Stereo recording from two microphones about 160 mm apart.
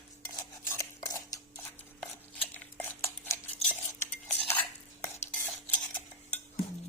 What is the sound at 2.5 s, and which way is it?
Cutlery, 10° left (ahead or behind).